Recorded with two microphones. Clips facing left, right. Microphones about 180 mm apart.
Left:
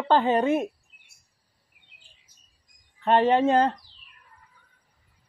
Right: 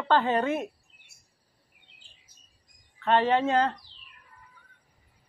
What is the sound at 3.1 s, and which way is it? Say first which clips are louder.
Speech: left 3 dB; 20° left (ahead or behind).